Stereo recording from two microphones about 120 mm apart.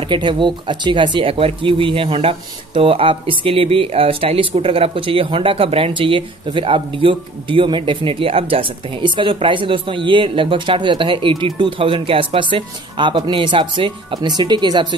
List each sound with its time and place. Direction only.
0.1 s speech: 45° right (ahead or behind)